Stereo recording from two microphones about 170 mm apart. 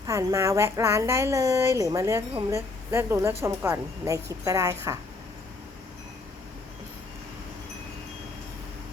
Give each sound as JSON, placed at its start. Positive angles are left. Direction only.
{"t": 0.1, "sound": "a woman's voice", "side_deg": -20}